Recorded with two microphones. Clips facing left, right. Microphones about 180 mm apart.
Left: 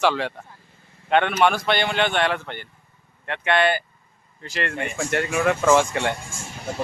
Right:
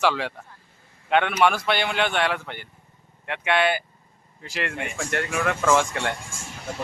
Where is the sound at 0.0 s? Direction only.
5° right (ahead or behind).